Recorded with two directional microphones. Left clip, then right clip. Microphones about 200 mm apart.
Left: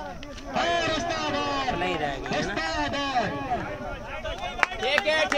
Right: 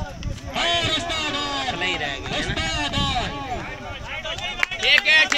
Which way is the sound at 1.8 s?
50° left (ahead or behind).